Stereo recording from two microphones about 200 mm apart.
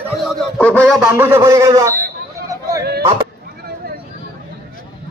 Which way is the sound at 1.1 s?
10° right (ahead or behind).